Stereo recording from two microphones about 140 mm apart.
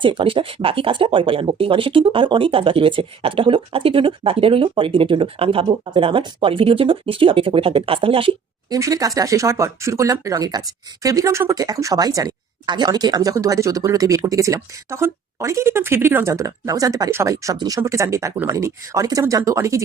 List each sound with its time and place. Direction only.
0.0 s speech: 35° right (ahead or behind)
8.7 s speech: 25° right (ahead or behind)